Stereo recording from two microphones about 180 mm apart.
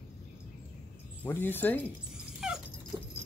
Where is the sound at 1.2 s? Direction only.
10° left (ahead or behind).